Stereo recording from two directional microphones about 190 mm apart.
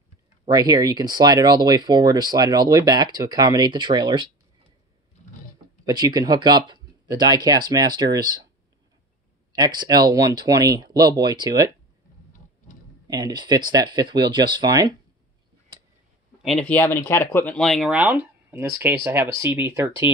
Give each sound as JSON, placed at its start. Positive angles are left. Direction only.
{"t": 0.5, "sound": "speech", "side_deg": -20}
{"t": 5.9, "sound": "speech", "side_deg": -20}
{"t": 9.6, "sound": "speech", "side_deg": -20}
{"t": 13.0, "sound": "speech", "side_deg": -20}
{"t": 16.4, "sound": "speech", "side_deg": 5}